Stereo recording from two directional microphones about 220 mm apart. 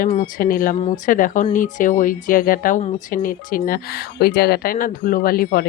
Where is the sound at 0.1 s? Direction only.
35° left (ahead or behind).